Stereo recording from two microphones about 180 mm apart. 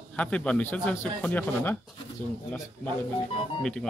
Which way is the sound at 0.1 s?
5° left (ahead or behind).